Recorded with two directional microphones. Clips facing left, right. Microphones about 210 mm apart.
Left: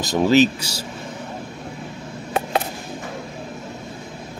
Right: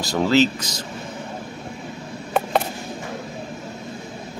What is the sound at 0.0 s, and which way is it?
Speech, 20° left (ahead or behind).